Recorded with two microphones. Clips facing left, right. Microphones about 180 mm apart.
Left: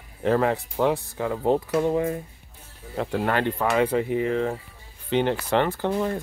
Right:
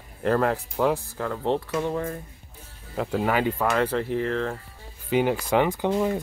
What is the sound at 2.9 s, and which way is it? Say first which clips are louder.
Speech: even; centre (ahead or behind).